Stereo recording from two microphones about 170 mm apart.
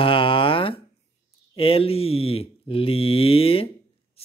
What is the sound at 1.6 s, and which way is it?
Speech, 35° left (ahead or behind).